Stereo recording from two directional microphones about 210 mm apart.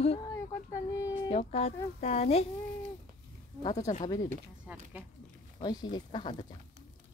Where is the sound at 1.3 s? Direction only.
30° left (ahead or behind).